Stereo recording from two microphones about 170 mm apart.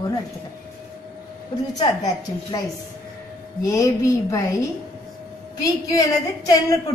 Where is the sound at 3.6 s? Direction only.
20° left (ahead or behind).